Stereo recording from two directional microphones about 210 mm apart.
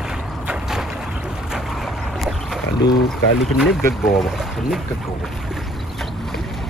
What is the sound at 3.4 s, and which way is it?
Speech, centre (ahead or behind).